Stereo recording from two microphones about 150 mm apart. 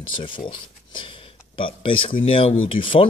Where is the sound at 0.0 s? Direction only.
35° left (ahead or behind).